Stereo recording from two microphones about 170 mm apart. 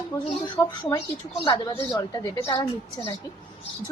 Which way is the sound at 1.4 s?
30° left (ahead or behind).